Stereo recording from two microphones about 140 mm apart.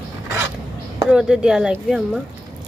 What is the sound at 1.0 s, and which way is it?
Speech, 5° right (ahead or behind).